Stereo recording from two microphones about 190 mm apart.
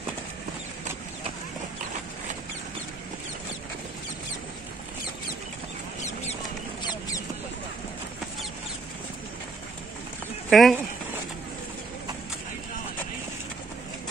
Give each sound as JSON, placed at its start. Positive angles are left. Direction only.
{"t": 6.8, "sound": "mouse", "side_deg": 20}
{"t": 10.5, "sound": "speech", "side_deg": 0}